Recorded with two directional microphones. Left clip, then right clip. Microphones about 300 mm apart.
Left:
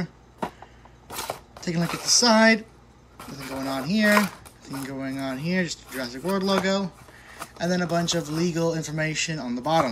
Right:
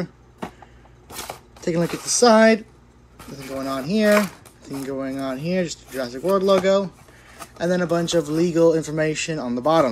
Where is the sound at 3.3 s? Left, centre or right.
Centre.